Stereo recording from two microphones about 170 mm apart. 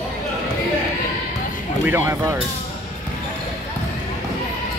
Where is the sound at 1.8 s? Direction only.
15° right (ahead or behind).